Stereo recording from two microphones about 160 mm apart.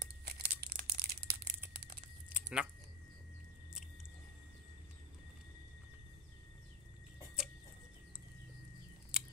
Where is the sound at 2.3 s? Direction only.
5° right (ahead or behind).